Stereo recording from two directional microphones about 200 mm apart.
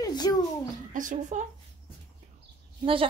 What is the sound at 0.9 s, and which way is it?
Speech, 40° right (ahead or behind).